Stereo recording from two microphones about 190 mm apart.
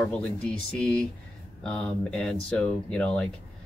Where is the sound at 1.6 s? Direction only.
5° left (ahead or behind).